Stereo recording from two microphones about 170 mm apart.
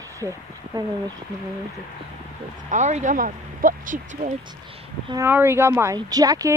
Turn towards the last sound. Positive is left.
turn(degrees=-20)  # may be behind; listen again after turning